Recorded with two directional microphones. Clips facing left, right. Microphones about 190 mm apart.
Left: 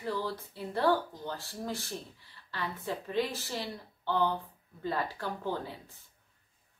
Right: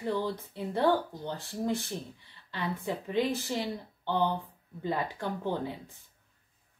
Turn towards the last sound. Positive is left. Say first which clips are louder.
# right 3 dB
turn(degrees=-20)  # may be behind; listen again after turning